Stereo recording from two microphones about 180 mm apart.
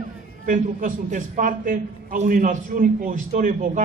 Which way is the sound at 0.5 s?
45° right (ahead or behind).